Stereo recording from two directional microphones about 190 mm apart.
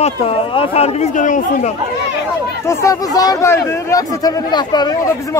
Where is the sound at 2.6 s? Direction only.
15° left (ahead or behind).